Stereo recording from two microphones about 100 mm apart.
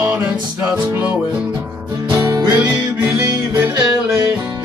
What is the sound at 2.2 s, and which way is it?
Music, 35° right (ahead or behind).